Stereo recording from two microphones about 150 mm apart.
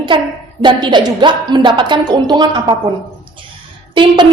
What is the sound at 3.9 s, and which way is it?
Speech, 35° right (ahead or behind).